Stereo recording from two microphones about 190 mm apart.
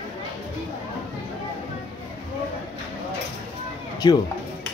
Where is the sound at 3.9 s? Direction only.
20° left (ahead or behind).